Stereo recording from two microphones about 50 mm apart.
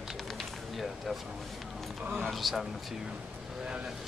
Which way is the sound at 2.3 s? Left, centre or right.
Centre.